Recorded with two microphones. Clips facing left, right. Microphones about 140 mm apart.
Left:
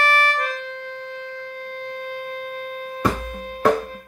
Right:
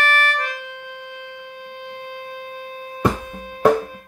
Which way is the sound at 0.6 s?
10° right (ahead or behind).